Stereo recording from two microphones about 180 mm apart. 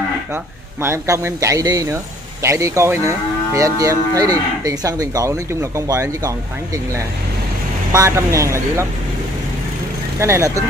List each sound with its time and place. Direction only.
0.8 s moo: 15° right (ahead or behind)
7.9 s moo: 15° right (ahead or behind)
10.1 s moo: 15° right (ahead or behind)